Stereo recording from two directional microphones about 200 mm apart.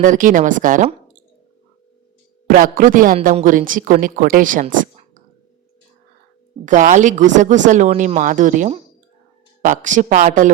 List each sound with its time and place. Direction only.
0.0 s speech: 40° right (ahead or behind)
2.5 s speech: 45° right (ahead or behind)
6.7 s speech: 40° right (ahead or behind)